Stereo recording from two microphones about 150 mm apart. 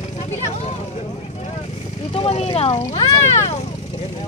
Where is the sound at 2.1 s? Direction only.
40° left (ahead or behind).